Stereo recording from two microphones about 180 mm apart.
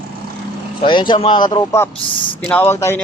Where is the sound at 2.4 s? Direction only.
10° left (ahead or behind).